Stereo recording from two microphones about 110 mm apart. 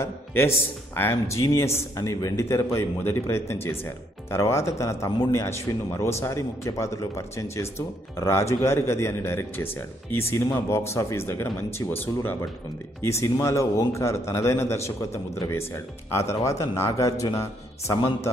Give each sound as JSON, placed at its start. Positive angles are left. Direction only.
{"t": 0.0, "sound": "a man's voice", "side_deg": 20}